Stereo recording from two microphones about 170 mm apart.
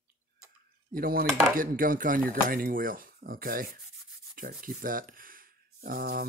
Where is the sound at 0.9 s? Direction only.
60° right (ahead or behind).